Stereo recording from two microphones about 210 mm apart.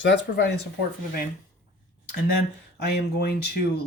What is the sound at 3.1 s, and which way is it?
Speech, 45° left (ahead or behind).